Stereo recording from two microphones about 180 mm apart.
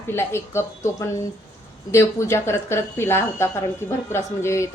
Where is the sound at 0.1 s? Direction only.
15° left (ahead or behind).